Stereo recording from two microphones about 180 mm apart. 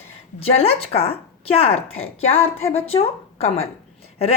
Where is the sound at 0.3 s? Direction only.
35° left (ahead or behind).